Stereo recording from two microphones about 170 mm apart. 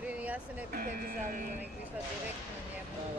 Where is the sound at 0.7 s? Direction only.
60° right (ahead or behind).